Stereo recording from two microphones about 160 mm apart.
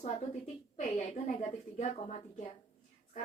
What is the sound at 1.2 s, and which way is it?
A woman's voice, 45° left (ahead or behind).